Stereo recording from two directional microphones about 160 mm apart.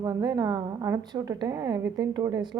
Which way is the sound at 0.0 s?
25° right (ahead or behind).